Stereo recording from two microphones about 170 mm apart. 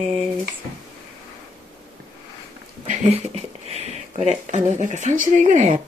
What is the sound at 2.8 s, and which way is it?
Speech, 45° right (ahead or behind).